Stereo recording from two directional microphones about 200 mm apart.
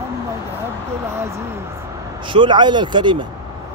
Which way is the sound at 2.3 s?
25° right (ahead or behind).